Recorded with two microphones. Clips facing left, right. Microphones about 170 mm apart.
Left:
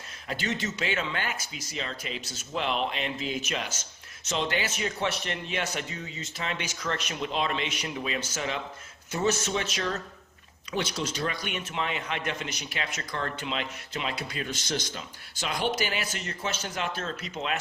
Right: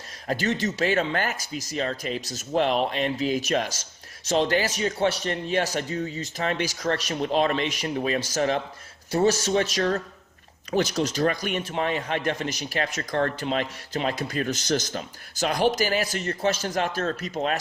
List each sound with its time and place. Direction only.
0.3 s a man's voice: 40° right (ahead or behind)